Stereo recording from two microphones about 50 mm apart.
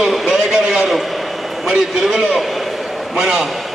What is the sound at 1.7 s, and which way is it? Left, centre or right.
Speech, centre.